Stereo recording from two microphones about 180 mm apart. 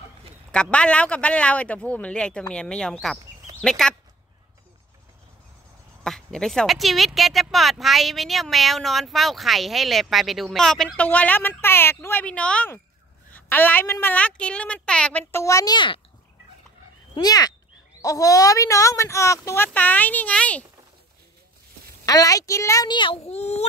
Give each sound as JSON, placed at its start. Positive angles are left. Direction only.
{"t": 0.5, "sound": "a woman's voice", "side_deg": 5}
{"t": 6.0, "sound": "a woman's voice", "side_deg": 5}
{"t": 17.1, "sound": "a woman's voice", "side_deg": 20}
{"t": 22.0, "sound": "speech", "side_deg": 20}